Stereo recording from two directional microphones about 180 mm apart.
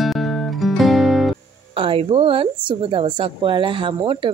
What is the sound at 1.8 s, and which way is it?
A woman's voice, 30° right (ahead or behind).